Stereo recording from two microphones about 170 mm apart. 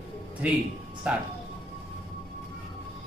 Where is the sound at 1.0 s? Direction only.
10° right (ahead or behind).